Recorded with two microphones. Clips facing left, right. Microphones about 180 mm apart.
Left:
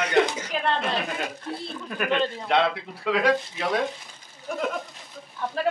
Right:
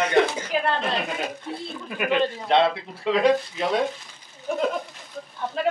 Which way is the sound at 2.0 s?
15° right (ahead or behind).